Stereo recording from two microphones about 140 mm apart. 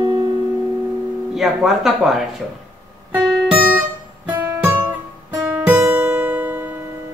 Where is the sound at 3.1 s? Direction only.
5° right (ahead or behind).